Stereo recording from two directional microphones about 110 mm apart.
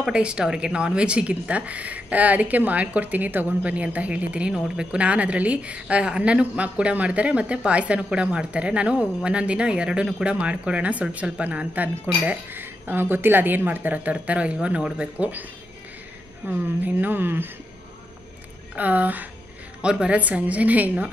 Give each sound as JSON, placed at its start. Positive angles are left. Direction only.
{"t": 0.0, "sound": "speech", "side_deg": -10}
{"t": 16.4, "sound": "speech", "side_deg": -15}
{"t": 18.8, "sound": "speech", "side_deg": -15}